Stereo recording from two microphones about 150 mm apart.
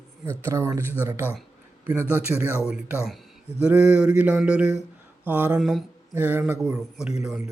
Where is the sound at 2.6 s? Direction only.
5° right (ahead or behind).